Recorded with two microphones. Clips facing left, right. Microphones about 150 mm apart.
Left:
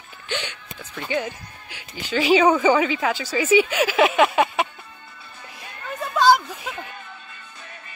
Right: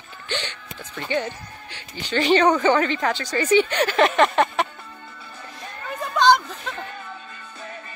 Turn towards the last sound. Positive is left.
turn(degrees=10)  # may be behind; listen again after turning